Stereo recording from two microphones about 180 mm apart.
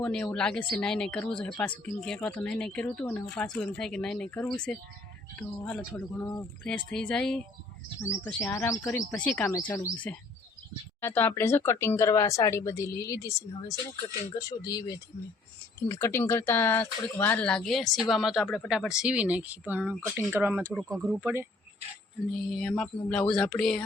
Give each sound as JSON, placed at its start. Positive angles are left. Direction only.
{"t": 0.0, "sound": "speech", "side_deg": 5}
{"t": 8.5, "sound": "speech", "side_deg": 15}
{"t": 22.4, "sound": "speech", "side_deg": 0}